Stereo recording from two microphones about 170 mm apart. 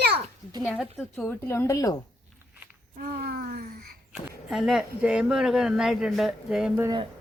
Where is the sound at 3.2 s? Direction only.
65° right (ahead or behind).